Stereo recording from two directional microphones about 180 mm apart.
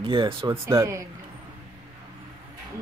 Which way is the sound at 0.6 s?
15° right (ahead or behind).